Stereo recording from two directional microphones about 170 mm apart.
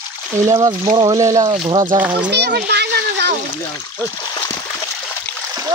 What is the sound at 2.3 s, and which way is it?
Splash, 75° right (ahead or behind).